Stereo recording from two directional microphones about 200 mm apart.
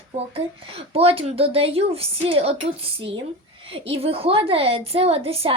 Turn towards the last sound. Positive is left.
turn(degrees=-30)  # may be behind; listen again after turning